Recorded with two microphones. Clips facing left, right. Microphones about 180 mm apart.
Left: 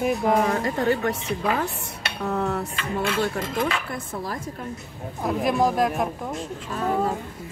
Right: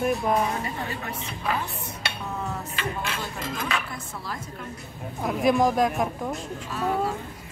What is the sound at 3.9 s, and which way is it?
Dishes, 50° left (ahead or behind).